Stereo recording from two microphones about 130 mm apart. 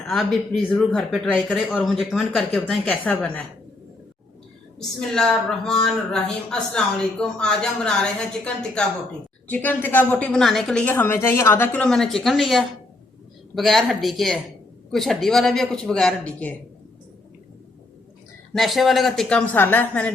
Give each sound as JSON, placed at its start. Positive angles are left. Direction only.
{"t": 0.1, "sound": "a woman's voice", "side_deg": 5}
{"t": 2.8, "sound": "a woman's voice", "side_deg": 10}
{"t": 4.8, "sound": "a woman's voice", "side_deg": 5}
{"t": 9.5, "sound": "a woman's voice", "side_deg": 15}
{"t": 10.8, "sound": "a woman's voice", "side_deg": 15}
{"t": 18.5, "sound": "a woman's voice", "side_deg": 0}